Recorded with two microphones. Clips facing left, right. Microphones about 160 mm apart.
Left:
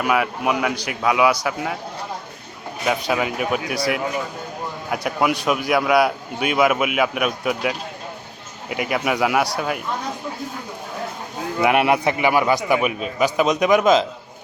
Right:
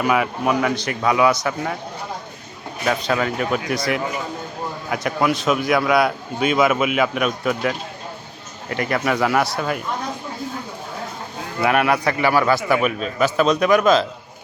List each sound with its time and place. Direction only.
0.0 s a man's voice: 5° left (ahead or behind)
2.8 s a man's voice: 10° left (ahead or behind)
11.6 s a man's voice: 20° left (ahead or behind)